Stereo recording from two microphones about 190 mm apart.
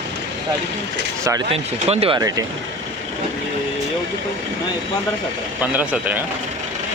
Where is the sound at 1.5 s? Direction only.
30° right (ahead or behind).